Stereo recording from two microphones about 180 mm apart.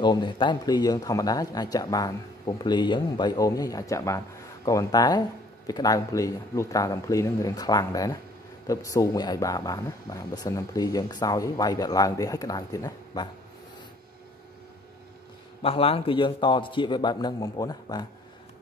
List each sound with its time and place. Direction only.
0.0 s speech: 25° left (ahead or behind)
15.6 s speech: 30° left (ahead or behind)